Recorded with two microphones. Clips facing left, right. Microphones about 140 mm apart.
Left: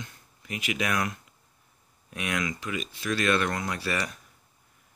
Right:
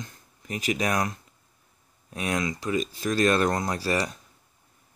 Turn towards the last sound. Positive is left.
turn(degrees=-35)  # may be behind; listen again after turning